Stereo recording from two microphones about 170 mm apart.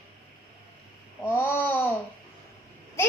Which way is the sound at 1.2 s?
10° left (ahead or behind).